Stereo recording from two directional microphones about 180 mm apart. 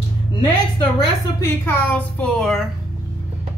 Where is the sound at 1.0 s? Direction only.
15° left (ahead or behind).